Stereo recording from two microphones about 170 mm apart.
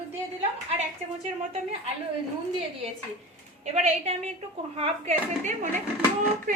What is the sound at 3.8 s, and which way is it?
A woman's voice, 40° right (ahead or behind).